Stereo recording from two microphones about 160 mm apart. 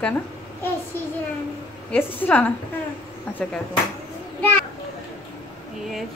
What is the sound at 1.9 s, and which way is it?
Speech, 10° left (ahead or behind).